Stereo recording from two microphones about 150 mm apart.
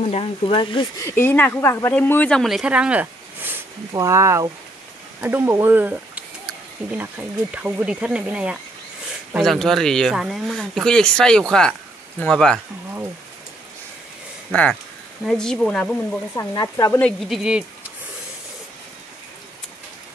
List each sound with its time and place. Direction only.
0.0 s speech: 40° left (ahead or behind)
1.0 s speech: 15° left (ahead or behind)
14.5 s speech: 10° left (ahead or behind)
16.3 s speech: 25° left (ahead or behind)
17.0 s speech: centre (ahead or behind)